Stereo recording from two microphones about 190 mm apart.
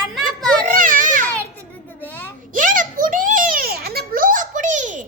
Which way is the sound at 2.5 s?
45° right (ahead or behind).